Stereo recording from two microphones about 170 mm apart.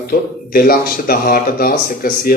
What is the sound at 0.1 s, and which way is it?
Speech, 60° left (ahead or behind).